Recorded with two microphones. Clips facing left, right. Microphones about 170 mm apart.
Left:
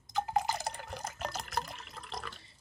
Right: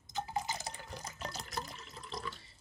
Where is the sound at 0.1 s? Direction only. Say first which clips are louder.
Left 6 dB; 65° left (ahead or behind).